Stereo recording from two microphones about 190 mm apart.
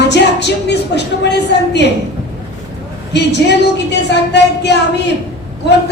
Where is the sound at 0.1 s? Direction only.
65° left (ahead or behind).